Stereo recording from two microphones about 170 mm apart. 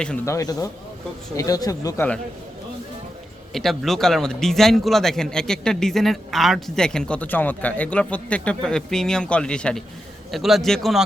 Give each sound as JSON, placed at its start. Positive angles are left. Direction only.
{"t": 0.3, "sound": "speech", "side_deg": 20}
{"t": 3.5, "sound": "a man's voice", "side_deg": 0}